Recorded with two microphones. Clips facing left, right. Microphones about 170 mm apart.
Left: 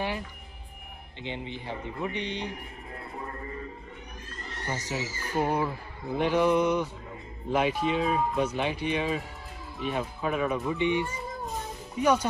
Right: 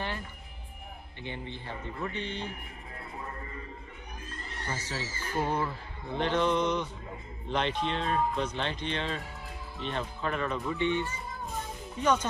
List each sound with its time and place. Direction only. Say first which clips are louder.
1.2 s speech: left 4 dB; 15° left (ahead or behind)
4.6 s speech: left 4 dB; 15° left (ahead or behind)